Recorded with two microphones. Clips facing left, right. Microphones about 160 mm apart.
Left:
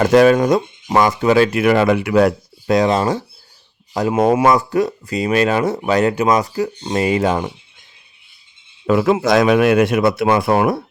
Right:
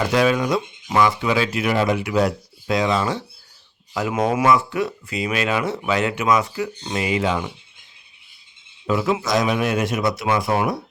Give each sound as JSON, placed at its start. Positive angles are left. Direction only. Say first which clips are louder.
{"t": 0.0, "sound": "speech", "louder": "left 8 dB", "side_deg": 50}
{"t": 8.9, "sound": "speech", "louder": "left 6 dB", "side_deg": 55}